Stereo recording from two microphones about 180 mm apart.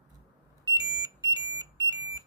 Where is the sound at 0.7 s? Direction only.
20° right (ahead or behind).